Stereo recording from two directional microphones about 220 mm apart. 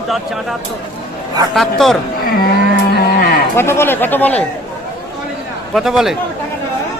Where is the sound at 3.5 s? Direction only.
10° left (ahead or behind).